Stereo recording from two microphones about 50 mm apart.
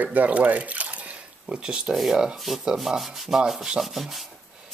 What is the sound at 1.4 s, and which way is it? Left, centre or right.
Speech, centre.